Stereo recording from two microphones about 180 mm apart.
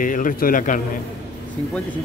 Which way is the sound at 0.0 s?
50° left (ahead or behind).